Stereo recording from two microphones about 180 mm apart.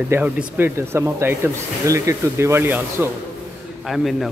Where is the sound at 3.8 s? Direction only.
Centre (ahead or behind).